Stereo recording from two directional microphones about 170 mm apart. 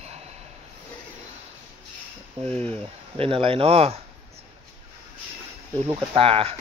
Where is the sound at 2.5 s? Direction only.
10° left (ahead or behind).